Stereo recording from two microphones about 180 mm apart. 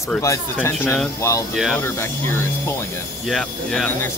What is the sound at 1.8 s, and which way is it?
Speech, 15° left (ahead or behind).